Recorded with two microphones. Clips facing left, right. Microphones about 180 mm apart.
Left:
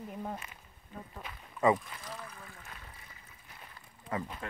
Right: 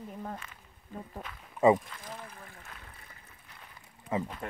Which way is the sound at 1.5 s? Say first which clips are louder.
Right 4 dB; 25° right (ahead or behind).